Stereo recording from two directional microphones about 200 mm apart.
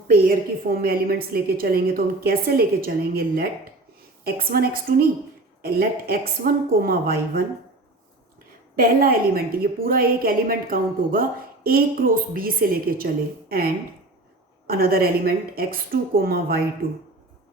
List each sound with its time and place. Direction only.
0.1 s a woman's voice: 45° right (ahead or behind)
8.7 s a woman's voice: 45° right (ahead or behind)
14.7 s a woman's voice: 50° right (ahead or behind)